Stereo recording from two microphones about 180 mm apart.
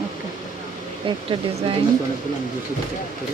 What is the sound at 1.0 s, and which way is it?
Speech, 30° right (ahead or behind).